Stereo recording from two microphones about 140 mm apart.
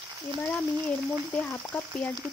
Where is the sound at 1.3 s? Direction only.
5° left (ahead or behind).